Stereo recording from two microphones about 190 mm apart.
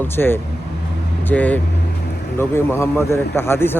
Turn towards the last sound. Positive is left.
turn(degrees=10)  # may be behind; listen again after turning